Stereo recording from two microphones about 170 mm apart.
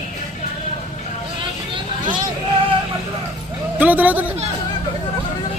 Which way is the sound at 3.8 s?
10° right (ahead or behind).